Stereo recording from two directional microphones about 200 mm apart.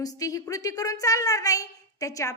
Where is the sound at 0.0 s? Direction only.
15° left (ahead or behind).